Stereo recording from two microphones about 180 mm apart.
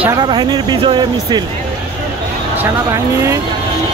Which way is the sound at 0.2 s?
25° right (ahead or behind).